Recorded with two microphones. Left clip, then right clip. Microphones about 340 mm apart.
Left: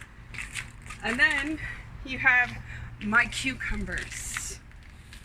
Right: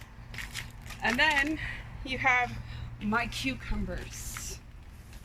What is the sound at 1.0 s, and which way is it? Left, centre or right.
Speech, right.